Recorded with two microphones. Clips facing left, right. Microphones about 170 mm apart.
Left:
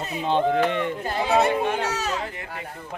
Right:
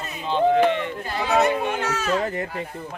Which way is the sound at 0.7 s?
50° left (ahead or behind).